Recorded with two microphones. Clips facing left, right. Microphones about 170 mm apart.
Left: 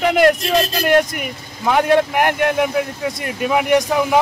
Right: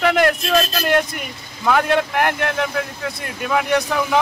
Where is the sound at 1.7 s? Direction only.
15° left (ahead or behind).